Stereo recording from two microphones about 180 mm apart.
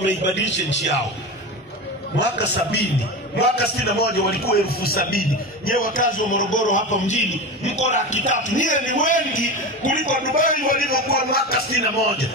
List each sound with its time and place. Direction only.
0.0 s a man's voice: 80° left
2.1 s a man's voice: 70° left (ahead or behind)